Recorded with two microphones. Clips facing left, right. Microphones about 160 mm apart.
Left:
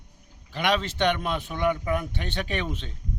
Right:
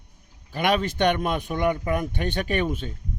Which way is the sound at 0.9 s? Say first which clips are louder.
Right 3 dB; 50° right (ahead or behind).